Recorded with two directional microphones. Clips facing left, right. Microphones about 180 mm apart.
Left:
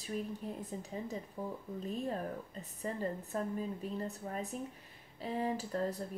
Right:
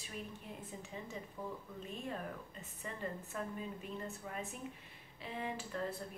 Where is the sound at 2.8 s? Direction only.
35° left (ahead or behind).